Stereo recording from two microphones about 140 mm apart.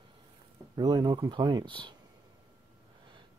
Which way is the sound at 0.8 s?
25° right (ahead or behind).